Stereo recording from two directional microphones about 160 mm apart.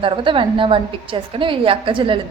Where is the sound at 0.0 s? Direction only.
30° right (ahead or behind).